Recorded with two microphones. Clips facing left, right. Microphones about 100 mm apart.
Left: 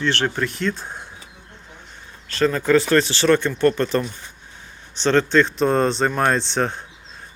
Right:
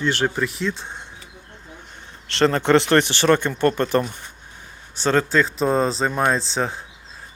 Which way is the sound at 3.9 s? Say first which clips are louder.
Right 2 dB; 35° right (ahead or behind).